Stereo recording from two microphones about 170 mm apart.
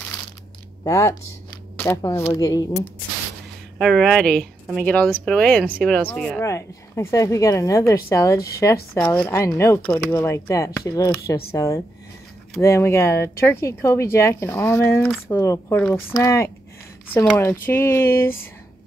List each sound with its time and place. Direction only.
0.8 s speech: 20° left (ahead or behind)
3.7 s a woman's voice: centre (ahead or behind)
6.4 s speech: 15° left (ahead or behind)
8.9 s speech: 5° left (ahead or behind)
9.3 s speech: 15° left (ahead or behind)